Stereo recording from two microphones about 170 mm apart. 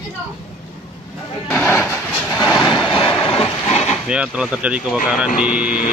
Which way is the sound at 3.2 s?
30° left (ahead or behind).